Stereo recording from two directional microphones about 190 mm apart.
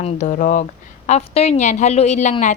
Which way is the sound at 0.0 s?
35° left (ahead or behind).